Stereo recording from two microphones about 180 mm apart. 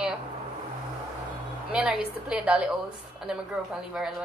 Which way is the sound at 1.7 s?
5° right (ahead or behind).